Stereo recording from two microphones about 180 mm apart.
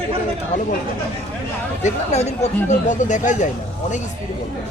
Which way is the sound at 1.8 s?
40° left (ahead or behind).